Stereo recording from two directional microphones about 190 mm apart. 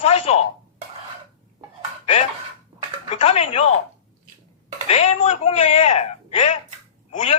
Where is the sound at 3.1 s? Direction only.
35° left (ahead or behind).